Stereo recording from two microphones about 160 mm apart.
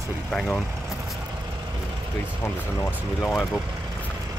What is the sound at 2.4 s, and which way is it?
Speech, 15° left (ahead or behind).